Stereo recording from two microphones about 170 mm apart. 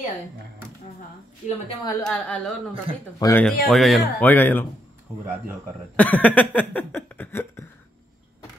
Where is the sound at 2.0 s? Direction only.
10° left (ahead or behind).